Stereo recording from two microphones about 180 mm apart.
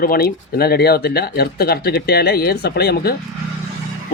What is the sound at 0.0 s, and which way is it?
Speech, 55° left (ahead or behind).